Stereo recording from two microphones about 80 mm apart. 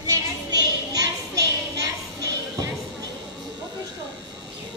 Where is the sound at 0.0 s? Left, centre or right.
Right.